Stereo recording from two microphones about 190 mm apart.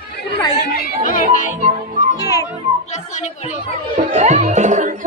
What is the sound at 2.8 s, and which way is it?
Speech, 40° left (ahead or behind).